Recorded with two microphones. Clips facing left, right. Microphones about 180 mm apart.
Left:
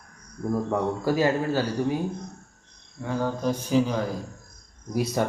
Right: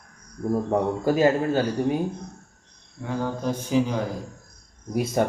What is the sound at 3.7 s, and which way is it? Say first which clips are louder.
Speech: even; 15° right (ahead or behind).